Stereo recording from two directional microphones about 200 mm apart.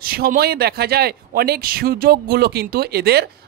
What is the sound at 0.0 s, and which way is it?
Speech, 50° right (ahead or behind).